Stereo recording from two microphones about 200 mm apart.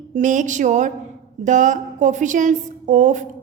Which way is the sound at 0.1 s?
40° right (ahead or behind).